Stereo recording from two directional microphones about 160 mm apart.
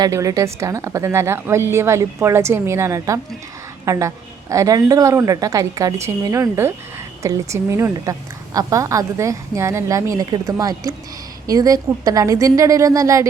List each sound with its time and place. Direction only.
0.0 s a woman's voice: 20° right (ahead or behind)